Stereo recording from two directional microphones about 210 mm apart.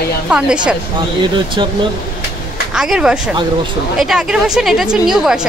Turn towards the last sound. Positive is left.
turn(degrees=0)  # may be behind; listen again after turning